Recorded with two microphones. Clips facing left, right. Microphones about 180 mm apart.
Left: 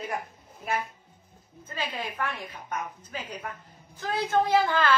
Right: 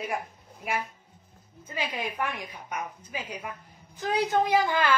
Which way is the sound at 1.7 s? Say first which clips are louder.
Right 1 dB; 15° right (ahead or behind).